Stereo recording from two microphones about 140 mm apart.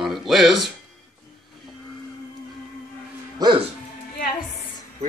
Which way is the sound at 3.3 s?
30° right (ahead or behind).